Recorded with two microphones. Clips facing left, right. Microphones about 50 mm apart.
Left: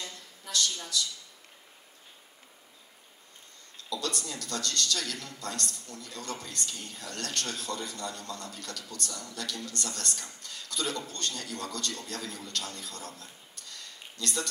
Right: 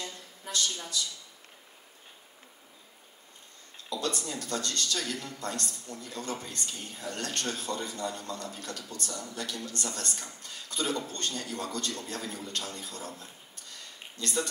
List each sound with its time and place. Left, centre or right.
0.5 s speech: centre
3.9 s a man's voice: centre